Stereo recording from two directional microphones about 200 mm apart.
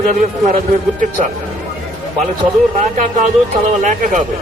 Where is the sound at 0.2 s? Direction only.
45° right (ahead or behind).